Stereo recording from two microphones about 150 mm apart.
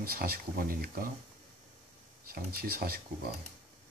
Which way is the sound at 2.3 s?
85° right.